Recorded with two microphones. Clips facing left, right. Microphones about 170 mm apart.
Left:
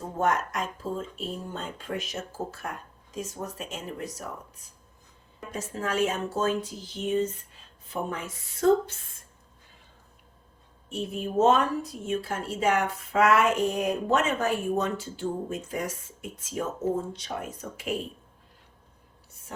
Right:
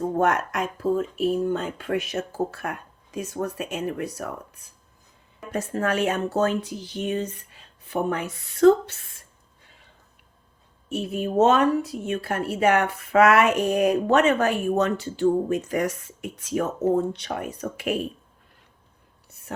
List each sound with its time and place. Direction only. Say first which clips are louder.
0.2 s speech: right 2 dB; 65° right (ahead or behind)
10.8 s speech: right 5 dB; 75° right (ahead or behind)
19.5 s speech: right 6 dB; 70° right (ahead or behind)